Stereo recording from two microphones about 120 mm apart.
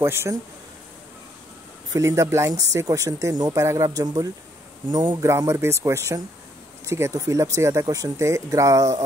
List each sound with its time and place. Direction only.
0.0 s speech: 20° right (ahead or behind)
1.9 s speech: 25° right (ahead or behind)
5.3 s speech: 25° right (ahead or behind)